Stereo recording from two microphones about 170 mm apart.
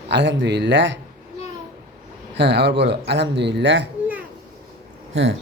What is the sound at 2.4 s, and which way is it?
Speech, 90° right.